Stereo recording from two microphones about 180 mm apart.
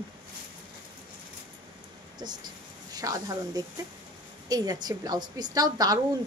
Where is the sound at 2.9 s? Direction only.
20° right (ahead or behind).